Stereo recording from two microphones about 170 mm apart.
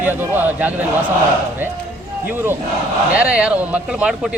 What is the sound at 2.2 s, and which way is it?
A man's voice, 10° right (ahead or behind).